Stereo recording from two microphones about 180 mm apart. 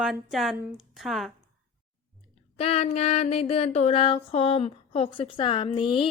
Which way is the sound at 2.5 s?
35° left (ahead or behind).